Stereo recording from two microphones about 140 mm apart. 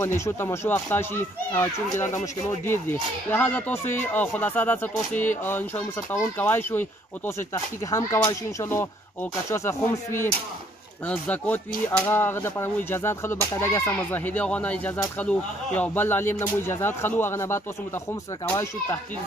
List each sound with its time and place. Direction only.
0.0 s speech: 20° left (ahead or behind)